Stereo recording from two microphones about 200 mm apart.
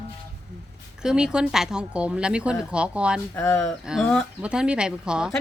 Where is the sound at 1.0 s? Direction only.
5° right (ahead or behind).